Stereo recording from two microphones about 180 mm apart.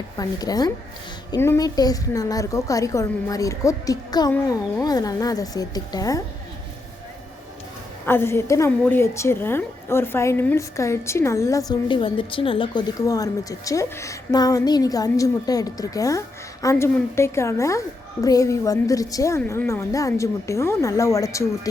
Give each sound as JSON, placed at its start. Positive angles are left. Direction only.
{"t": 0.2, "sound": "a woman's voice", "side_deg": 20}
{"t": 8.0, "sound": "a woman's voice", "side_deg": 15}